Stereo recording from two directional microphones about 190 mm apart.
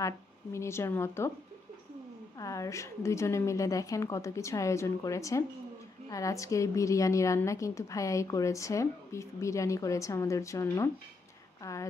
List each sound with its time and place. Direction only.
0.0 s a woman's voice: 15° left (ahead or behind)
2.3 s a woman's voice: 15° left (ahead or behind)